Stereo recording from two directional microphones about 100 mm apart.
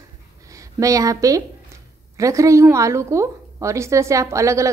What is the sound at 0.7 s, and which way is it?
A woman's voice, 35° right (ahead or behind).